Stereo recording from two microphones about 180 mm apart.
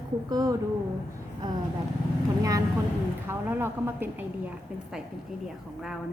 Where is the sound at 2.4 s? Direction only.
20° right (ahead or behind).